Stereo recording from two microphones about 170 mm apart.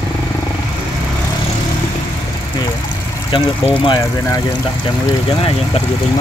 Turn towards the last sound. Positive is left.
turn(degrees=30)  # may be behind; listen again after turning